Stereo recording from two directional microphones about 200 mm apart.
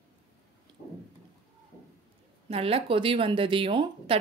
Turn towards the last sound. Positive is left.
turn(degrees=-25)  # may be behind; listen again after turning